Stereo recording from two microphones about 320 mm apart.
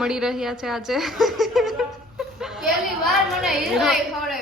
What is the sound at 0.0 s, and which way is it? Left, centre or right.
A woman's voice, centre.